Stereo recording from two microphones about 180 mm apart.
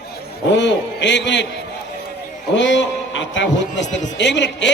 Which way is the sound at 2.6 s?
90° left.